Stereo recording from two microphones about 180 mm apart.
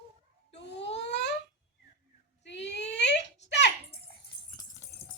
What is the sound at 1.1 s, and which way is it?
Babbling, 70° left (ahead or behind).